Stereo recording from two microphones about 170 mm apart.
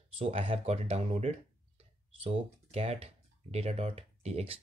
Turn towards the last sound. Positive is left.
turn(degrees=-35)  # may be behind; listen again after turning